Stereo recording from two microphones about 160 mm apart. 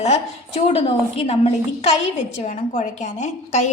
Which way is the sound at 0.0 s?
45° left (ahead or behind).